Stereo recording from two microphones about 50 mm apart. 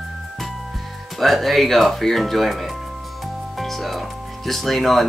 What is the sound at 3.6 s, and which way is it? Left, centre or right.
Music, centre.